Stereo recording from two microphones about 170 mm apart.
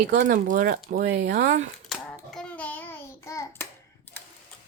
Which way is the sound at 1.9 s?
Centre (ahead or behind).